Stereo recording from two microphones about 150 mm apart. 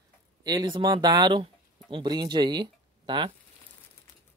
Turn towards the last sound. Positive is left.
turn(degrees=-30)  # may be behind; listen again after turning